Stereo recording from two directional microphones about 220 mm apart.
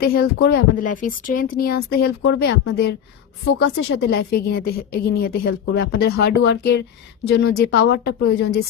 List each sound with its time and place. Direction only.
0.0 s a woman's voice: 45° left (ahead or behind)